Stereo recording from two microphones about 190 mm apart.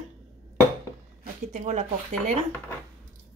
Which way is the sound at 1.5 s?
35° right (ahead or behind).